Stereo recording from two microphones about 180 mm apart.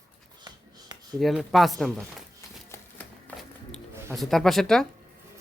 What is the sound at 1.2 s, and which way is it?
Speech, centre (ahead or behind).